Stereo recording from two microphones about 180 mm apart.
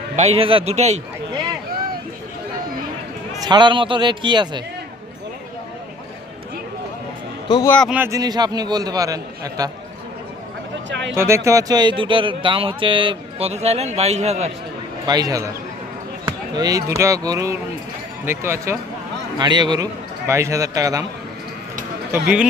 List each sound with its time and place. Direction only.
0.2 s a man's voice: 35° right (ahead or behind)
3.4 s speech: 25° right (ahead or behind)
7.4 s a man's voice: 25° left (ahead or behind)
7.9 s speech: 10° right (ahead or behind)
10.8 s speech: 90° right
11.1 s speech: 15° right (ahead or behind); by 14.5 s 40° right (ahead or behind)
15.0 s speech: 20° right (ahead or behind)
19.4 s speech: 25° right (ahead or behind)